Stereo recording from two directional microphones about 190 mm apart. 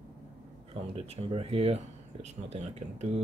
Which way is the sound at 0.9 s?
30° right (ahead or behind).